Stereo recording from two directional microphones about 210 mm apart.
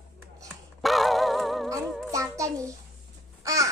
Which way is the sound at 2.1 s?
15° right (ahead or behind).